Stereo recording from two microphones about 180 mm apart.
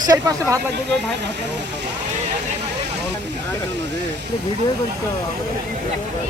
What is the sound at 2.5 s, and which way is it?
Vehicle, 70° right (ahead or behind).